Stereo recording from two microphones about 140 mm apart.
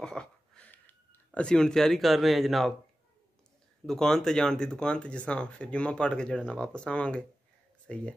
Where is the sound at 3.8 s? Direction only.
5° left (ahead or behind).